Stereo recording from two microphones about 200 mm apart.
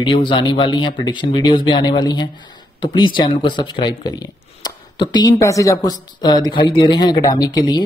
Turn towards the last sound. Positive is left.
turn(degrees=20)  # may be behind; listen again after turning